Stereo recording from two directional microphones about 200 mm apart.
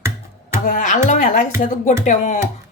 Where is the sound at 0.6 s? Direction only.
40° left (ahead or behind).